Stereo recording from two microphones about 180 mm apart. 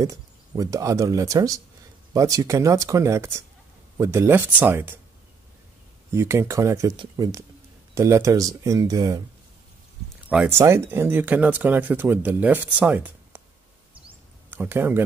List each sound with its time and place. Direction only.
0.0 s speech: 20° right (ahead or behind)
6.1 s speech: 15° right (ahead or behind)
10.3 s speech: 5° right (ahead or behind)
14.5 s speech: 10° right (ahead or behind)